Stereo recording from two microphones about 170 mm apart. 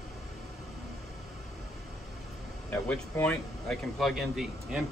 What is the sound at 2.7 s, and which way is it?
A man's voice, 10° left (ahead or behind).